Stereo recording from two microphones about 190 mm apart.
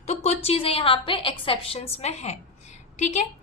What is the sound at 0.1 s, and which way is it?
A woman's voice, 35° left (ahead or behind).